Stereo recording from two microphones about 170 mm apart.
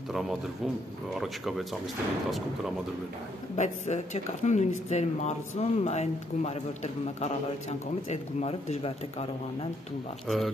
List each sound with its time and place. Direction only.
0.1 s speech: centre (ahead or behind)
3.5 s speech: 45° left (ahead or behind)
10.2 s speech: centre (ahead or behind)